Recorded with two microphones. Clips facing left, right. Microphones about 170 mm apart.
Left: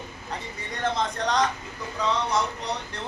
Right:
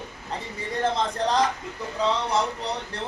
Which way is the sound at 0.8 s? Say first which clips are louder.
Right 1 dB; 30° right (ahead or behind).